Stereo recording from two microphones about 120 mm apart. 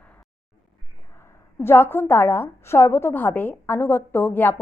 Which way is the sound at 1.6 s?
20° left (ahead or behind).